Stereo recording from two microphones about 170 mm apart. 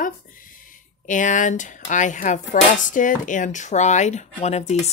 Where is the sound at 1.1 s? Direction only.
50° left (ahead or behind).